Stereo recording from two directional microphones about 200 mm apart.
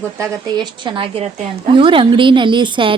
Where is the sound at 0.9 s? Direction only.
25° right (ahead or behind).